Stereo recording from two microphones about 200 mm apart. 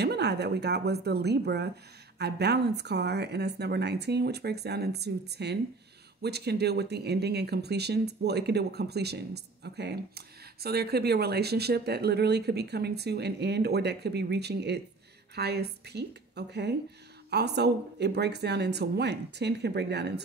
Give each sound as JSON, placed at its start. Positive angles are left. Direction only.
{"t": 0.0, "sound": "speech", "side_deg": -55}